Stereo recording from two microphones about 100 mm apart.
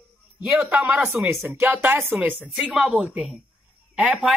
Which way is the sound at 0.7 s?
15° right (ahead or behind).